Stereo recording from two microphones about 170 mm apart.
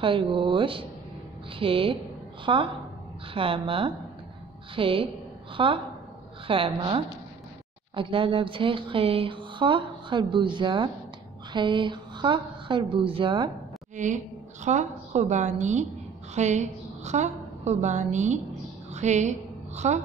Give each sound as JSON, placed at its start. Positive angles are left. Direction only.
{"t": 0.0, "sound": "speech", "side_deg": -30}
{"t": 13.9, "sound": "a woman's voice", "side_deg": -45}